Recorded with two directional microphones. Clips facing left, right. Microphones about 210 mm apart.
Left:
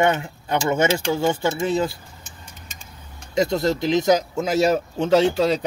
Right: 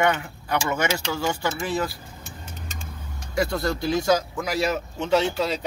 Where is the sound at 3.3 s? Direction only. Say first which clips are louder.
Left 4 dB; 20° left (ahead or behind).